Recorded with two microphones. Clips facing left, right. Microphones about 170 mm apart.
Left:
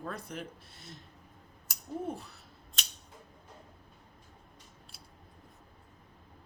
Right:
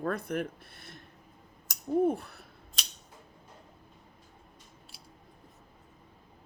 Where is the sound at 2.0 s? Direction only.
60° right (ahead or behind).